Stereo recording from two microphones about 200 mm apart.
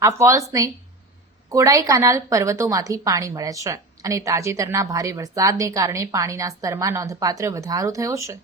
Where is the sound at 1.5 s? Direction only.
15° right (ahead or behind).